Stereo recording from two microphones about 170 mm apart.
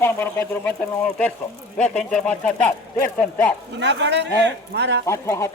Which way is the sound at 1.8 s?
5° left (ahead or behind).